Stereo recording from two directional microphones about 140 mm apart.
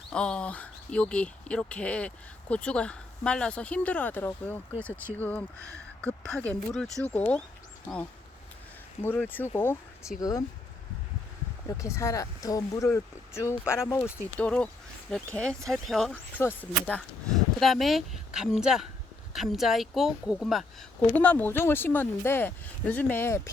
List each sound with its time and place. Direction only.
0.1 s speech: 5° left (ahead or behind)
9.0 s speech: 15° left (ahead or behind)
10.2 s speech: 25° left (ahead or behind)
11.8 s speech: 20° left (ahead or behind); by 16.1 s 5° left (ahead or behind)
16.4 s speech: 15° left (ahead or behind)
17.6 s speech: centre (ahead or behind)
21.1 s speech: 10° left (ahead or behind)